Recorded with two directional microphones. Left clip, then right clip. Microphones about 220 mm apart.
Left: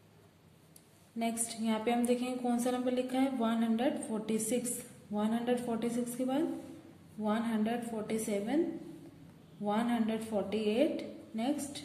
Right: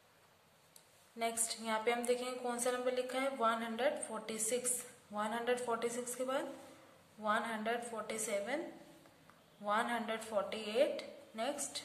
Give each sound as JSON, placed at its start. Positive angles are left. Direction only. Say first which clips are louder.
{"t": 1.2, "sound": "a woman's voice", "louder": "left 2 dB", "side_deg": -15}
{"t": 9.7, "sound": "a woman's voice", "louder": "left 2 dB", "side_deg": -20}